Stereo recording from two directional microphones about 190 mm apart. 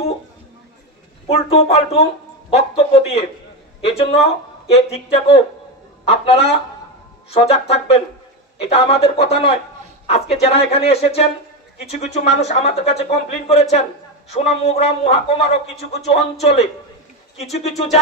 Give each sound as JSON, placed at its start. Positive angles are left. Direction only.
{"t": 1.2, "sound": "speech", "side_deg": 30}